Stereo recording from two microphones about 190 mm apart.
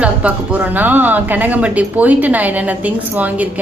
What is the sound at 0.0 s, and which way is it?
A woman's voice, 10° right (ahead or behind).